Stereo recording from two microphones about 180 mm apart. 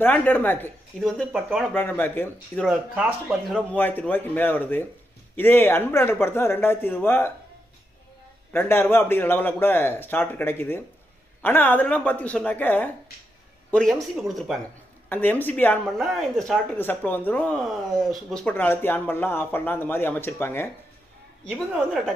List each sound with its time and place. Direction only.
0.0 s speech: 10° left (ahead or behind)
1.0 s speech: centre (ahead or behind)
1.7 s speech: 10° left (ahead or behind)
2.9 s speech: 10° right (ahead or behind)
3.7 s speech: 10° left (ahead or behind)
8.5 s a man's voice: 10° left (ahead or behind)
15.0 s speech: 10° left (ahead or behind)
21.7 s speech: 5° right (ahead or behind)